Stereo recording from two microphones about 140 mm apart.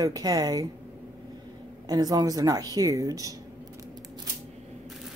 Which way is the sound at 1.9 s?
30° right (ahead or behind).